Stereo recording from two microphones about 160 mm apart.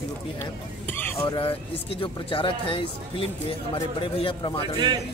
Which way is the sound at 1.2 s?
35° left (ahead or behind).